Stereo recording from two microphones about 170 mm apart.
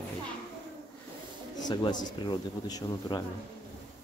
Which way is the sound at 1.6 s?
25° left (ahead or behind).